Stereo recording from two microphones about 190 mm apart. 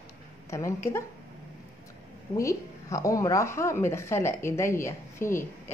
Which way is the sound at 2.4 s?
15° left (ahead or behind).